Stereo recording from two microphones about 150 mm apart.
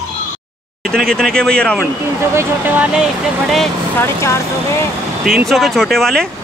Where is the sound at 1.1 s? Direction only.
5° left (ahead or behind).